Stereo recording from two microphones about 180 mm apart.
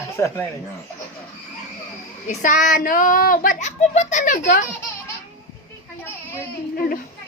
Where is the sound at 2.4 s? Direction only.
45° left (ahead or behind).